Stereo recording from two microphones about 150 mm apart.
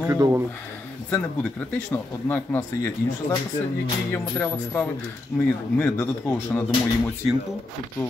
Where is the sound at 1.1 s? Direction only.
10° left (ahead or behind).